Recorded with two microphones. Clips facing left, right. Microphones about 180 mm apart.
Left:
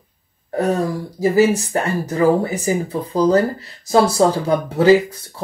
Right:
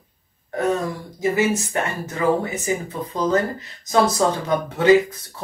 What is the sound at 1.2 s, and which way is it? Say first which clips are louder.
Speech: left 5 dB; 35° left (ahead or behind).